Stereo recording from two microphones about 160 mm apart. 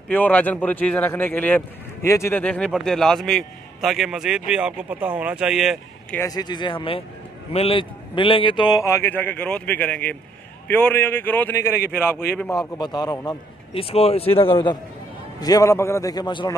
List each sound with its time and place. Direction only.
0.1 s a man's voice: 10° left (ahead or behind)
6.1 s a man's voice: 20° left (ahead or behind)
13.8 s speech: 40° left (ahead or behind)
15.4 s a man's voice: 20° left (ahead or behind)